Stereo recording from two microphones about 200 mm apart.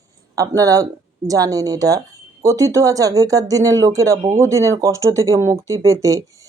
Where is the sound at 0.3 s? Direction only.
15° right (ahead or behind).